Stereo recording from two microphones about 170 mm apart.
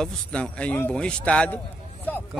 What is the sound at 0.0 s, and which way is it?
A man's voice, 5° left (ahead or behind).